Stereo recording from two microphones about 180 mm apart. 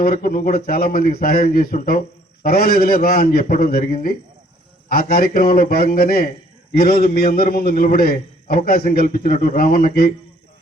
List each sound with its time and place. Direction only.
0.0 s a man's voice: 55° left (ahead or behind)